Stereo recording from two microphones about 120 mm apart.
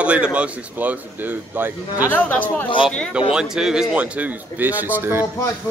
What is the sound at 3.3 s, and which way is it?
Speech, 5° right (ahead or behind).